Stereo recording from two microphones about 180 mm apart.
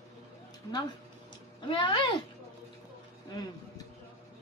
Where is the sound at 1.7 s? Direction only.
30° left (ahead or behind).